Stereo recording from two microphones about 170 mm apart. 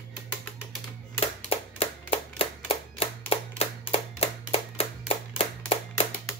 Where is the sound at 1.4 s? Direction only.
35° left (ahead or behind).